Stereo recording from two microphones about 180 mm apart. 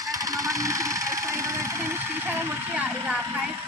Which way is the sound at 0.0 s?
20° right (ahead or behind).